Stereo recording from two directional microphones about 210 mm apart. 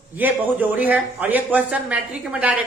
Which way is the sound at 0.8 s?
5° right (ahead or behind).